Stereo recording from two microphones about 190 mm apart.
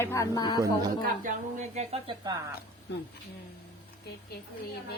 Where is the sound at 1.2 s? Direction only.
40° right (ahead or behind).